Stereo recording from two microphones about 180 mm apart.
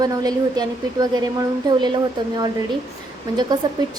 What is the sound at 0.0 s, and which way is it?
Speech, 20° right (ahead or behind).